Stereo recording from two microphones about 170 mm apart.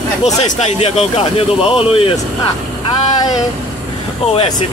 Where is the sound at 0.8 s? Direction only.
35° left (ahead or behind).